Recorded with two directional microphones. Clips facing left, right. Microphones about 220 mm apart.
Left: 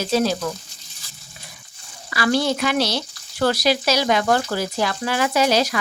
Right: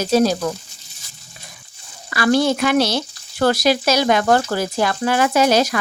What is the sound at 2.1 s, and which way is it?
Speech, 50° right (ahead or behind).